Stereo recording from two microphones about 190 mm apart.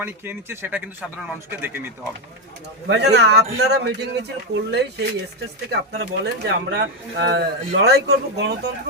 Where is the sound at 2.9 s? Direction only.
60° right (ahead or behind).